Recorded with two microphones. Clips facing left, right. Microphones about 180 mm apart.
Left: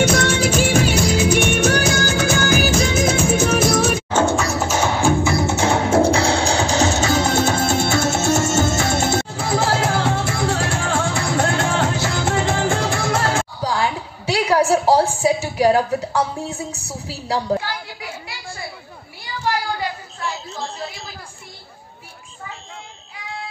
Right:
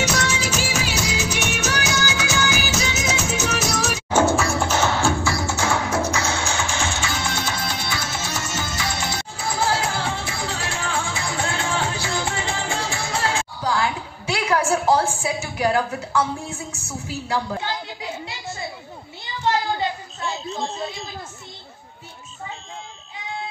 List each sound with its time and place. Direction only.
0.0 s music: 55° left (ahead or behind)
4.1 s music: 10° right (ahead or behind)
4.5 s music: 5° left (ahead or behind); by 13.5 s 50° left (ahead or behind)
13.6 s a sound: 35° left (ahead or behind)
17.6 s children playing: 20° right (ahead or behind)
19.2 s a sound: 20° right (ahead or behind)